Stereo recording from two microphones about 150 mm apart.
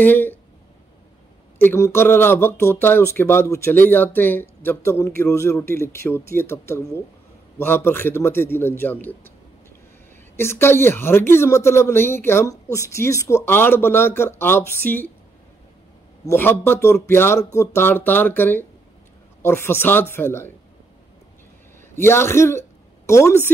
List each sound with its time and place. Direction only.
0.0 s a man's voice: 15° left (ahead or behind)
1.6 s a man's voice: 15° left (ahead or behind)
10.3 s a man's voice: 15° left (ahead or behind)
16.3 s a man's voice: 15° left (ahead or behind)
21.9 s a man's voice: 15° left (ahead or behind)